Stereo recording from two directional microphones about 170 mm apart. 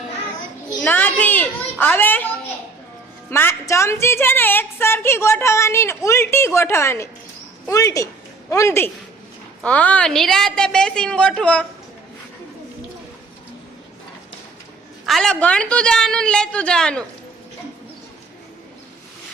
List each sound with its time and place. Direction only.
0.8 s a child's voice: 10° left (ahead or behind)
15.0 s a woman's voice: centre (ahead or behind)